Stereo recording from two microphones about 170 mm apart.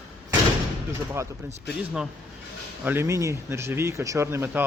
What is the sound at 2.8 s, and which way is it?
Speech, 15° right (ahead or behind).